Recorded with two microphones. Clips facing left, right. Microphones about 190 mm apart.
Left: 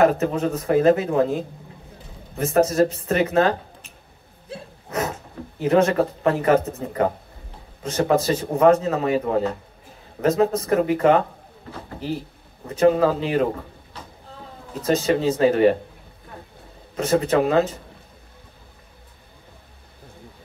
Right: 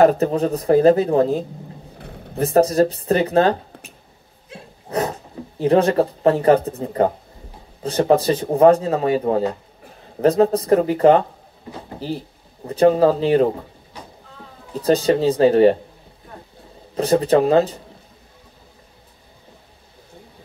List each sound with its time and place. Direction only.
0.2 s a man's voice: 35° right (ahead or behind)
4.8 s a sound: 35° right (ahead or behind)
5.6 s a man's voice: 35° right (ahead or behind)
14.7 s a man's voice: 35° right (ahead or behind)
16.9 s a man's voice: 35° right (ahead or behind)